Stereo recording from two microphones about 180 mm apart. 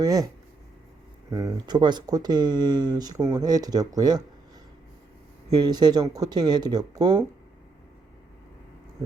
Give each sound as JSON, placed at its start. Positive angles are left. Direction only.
{"t": 0.0, "sound": "speech", "side_deg": -20}
{"t": 1.3, "sound": "speech", "side_deg": -20}
{"t": 5.6, "sound": "speech", "side_deg": -25}